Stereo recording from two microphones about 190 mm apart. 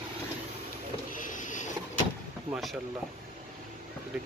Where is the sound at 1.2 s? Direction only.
45° left (ahead or behind).